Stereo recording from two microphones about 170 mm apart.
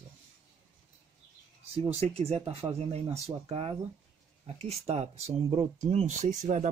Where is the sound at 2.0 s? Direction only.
40° right (ahead or behind).